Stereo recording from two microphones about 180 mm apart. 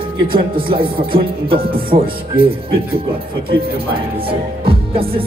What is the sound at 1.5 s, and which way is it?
Music, 55° right (ahead or behind).